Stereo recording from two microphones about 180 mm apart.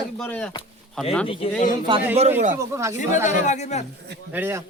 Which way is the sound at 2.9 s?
45° left (ahead or behind).